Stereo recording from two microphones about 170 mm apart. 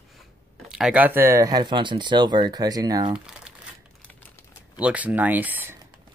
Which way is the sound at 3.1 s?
5° right (ahead or behind).